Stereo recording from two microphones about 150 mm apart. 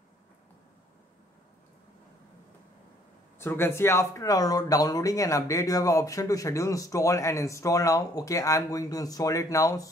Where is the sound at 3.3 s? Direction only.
15° left (ahead or behind).